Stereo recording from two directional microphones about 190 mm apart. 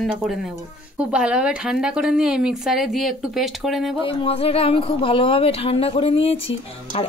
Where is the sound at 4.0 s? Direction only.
30° left (ahead or behind).